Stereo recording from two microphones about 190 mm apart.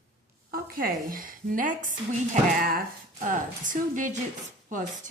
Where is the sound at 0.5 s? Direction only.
50° right (ahead or behind).